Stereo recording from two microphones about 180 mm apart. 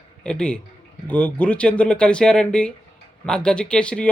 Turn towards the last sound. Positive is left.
turn(degrees=5)  # may be behind; listen again after turning